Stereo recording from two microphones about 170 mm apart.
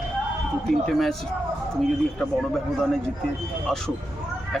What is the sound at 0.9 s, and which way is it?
Speech, centre (ahead or behind).